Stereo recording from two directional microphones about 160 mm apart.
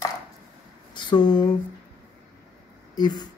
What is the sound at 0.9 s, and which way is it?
Speech, 30° left (ahead or behind).